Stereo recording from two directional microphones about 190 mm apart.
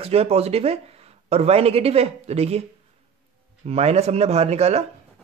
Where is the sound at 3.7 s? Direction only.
35° right (ahead or behind).